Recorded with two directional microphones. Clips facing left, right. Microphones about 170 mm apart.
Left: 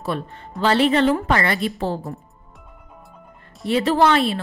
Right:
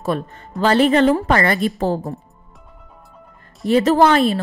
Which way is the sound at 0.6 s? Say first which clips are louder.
Right 3 dB; 45° right (ahead or behind).